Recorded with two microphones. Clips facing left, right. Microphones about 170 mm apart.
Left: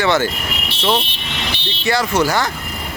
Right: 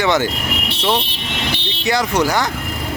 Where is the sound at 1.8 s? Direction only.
15° right (ahead or behind).